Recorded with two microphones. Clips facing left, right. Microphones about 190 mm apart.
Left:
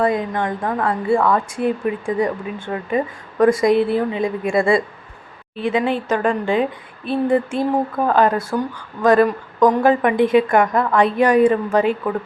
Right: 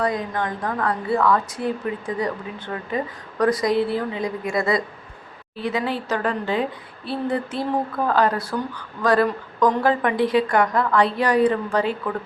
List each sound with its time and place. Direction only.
0.0 s a woman's voice: 25° left (ahead or behind)
8.4 s speech: 45° left (ahead or behind)
9.0 s a woman's voice: 20° left (ahead or behind)